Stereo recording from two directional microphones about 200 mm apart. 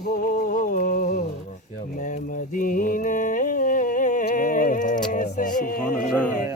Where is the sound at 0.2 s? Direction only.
45° left (ahead or behind).